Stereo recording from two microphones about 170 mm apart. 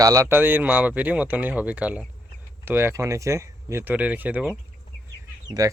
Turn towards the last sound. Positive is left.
turn(degrees=-20)  # may be behind; listen again after turning